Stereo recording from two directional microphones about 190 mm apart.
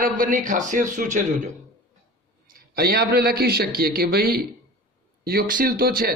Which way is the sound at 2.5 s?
50° right (ahead or behind).